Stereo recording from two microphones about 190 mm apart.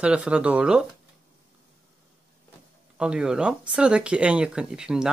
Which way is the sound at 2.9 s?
5° right (ahead or behind).